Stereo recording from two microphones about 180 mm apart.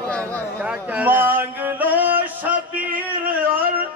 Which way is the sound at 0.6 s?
5° right (ahead or behind).